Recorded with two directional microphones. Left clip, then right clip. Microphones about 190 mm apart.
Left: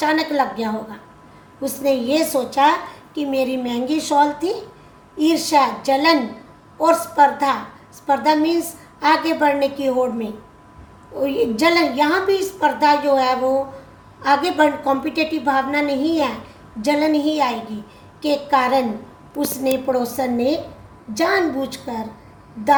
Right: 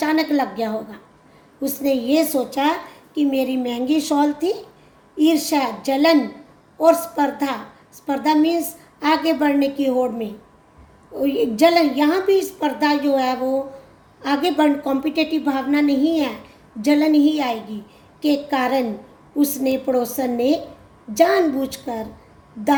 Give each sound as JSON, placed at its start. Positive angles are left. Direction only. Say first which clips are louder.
{"t": 0.0, "sound": "a woman's voice", "louder": "left 1 dB", "side_deg": -60}